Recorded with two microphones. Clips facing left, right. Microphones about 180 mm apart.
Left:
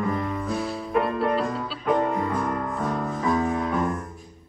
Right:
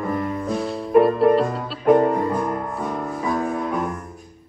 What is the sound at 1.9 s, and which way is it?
Music, 40° right (ahead or behind).